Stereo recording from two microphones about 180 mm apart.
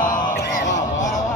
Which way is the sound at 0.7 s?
45° left (ahead or behind).